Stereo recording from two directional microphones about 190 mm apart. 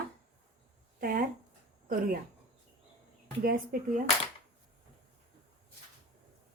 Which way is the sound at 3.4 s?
50° right (ahead or behind).